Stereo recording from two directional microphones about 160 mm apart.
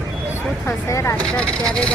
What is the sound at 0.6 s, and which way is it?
Speech, 15° left (ahead or behind).